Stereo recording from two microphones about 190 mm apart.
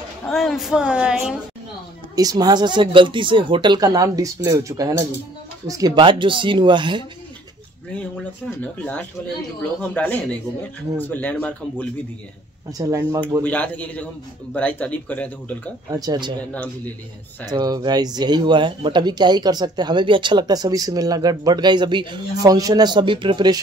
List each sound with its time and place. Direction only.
0.3 s speech: centre (ahead or behind)
2.1 s speech: 20° right (ahead or behind)
9.6 s speech: 10° left (ahead or behind)
12.7 s speech: 20° right (ahead or behind)
13.4 s speech: 10° left (ahead or behind)
16.0 s speech: 20° right (ahead or behind)
16.5 s speech: 10° left (ahead or behind)
17.5 s speech: 20° right (ahead or behind)